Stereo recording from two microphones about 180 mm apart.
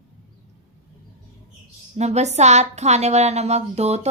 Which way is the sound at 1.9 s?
40° right (ahead or behind).